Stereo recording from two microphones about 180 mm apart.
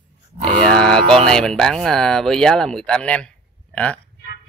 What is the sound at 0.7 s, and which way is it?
Speech, 5° left (ahead or behind).